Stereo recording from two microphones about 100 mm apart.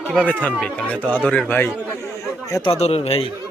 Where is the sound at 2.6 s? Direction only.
90° left.